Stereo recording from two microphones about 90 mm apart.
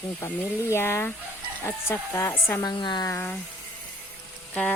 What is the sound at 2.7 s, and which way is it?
Speech, 55° left (ahead or behind).